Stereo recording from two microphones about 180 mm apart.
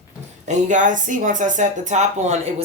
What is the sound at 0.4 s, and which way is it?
Speech, 40° right (ahead or behind).